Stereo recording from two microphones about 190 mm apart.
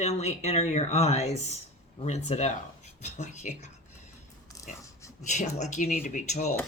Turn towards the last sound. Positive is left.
turn(degrees=40)  # may be behind; listen again after turning